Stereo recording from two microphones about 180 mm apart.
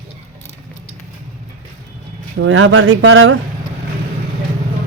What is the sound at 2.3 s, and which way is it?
Speech, 90° right.